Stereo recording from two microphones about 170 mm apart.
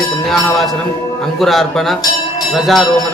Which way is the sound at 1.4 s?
Centre (ahead or behind).